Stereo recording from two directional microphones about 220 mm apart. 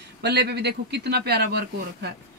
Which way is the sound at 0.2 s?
50° right (ahead or behind).